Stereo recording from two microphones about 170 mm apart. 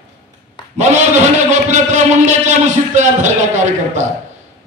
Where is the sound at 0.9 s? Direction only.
45° right (ahead or behind).